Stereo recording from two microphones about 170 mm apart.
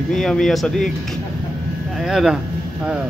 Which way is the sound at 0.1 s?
Centre (ahead or behind).